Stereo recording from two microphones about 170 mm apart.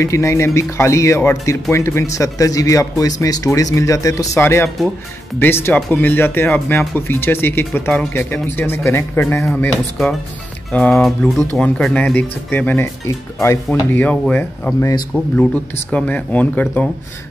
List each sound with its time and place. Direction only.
0.0 s speech: 15° left (ahead or behind)
9.5 s speech: 5° left (ahead or behind)